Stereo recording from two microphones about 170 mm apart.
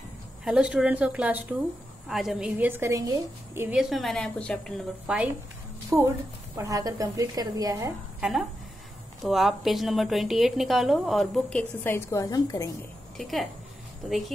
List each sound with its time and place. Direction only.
0.5 s a woman's voice: 5° right (ahead or behind)
3.9 s a woman's voice: centre (ahead or behind); by 7.9 s 20° right (ahead or behind)
8.2 s a woman's voice: 5° right (ahead or behind)
11.8 s a woman's voice: 15° left (ahead or behind)
13.2 s a woman's voice: centre (ahead or behind)